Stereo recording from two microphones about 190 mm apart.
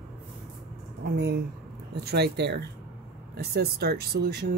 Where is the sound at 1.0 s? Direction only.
60° right (ahead or behind).